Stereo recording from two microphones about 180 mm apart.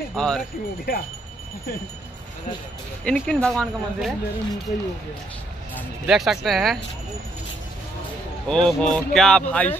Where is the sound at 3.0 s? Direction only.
5° left (ahead or behind).